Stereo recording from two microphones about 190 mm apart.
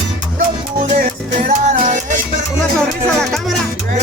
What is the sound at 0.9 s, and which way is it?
Music, 45° right (ahead or behind).